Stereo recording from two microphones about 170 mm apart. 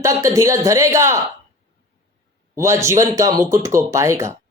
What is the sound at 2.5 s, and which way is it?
Speech, 15° right (ahead or behind).